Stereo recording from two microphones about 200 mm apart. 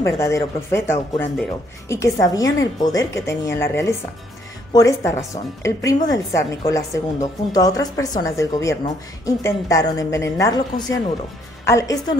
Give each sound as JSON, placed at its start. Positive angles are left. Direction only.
{"t": 0.0, "sound": "a woman's voice", "side_deg": 15}